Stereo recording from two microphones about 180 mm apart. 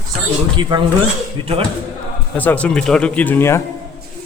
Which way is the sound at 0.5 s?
25° right (ahead or behind).